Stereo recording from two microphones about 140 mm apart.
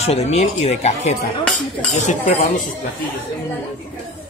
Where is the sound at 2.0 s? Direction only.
65° left (ahead or behind).